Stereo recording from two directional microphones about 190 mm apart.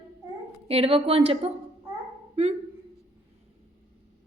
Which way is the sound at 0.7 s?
30° right (ahead or behind).